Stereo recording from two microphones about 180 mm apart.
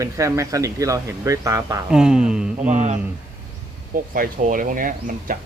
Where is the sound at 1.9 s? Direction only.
5° right (ahead or behind).